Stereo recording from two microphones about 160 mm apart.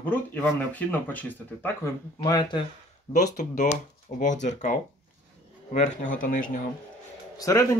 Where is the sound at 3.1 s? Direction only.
50° left (ahead or behind).